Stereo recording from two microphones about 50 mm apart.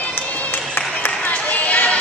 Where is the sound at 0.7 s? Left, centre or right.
Left.